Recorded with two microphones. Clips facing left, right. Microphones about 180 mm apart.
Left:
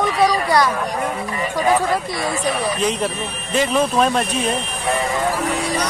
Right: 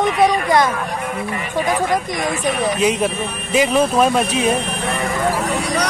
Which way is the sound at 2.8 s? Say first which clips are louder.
Right 3 dB; 10° right (ahead or behind).